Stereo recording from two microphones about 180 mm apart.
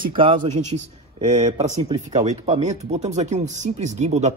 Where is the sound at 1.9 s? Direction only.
35° right (ahead or behind).